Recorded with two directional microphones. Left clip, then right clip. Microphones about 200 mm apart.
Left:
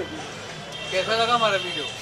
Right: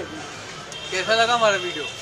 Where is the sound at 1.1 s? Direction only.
60° right (ahead or behind).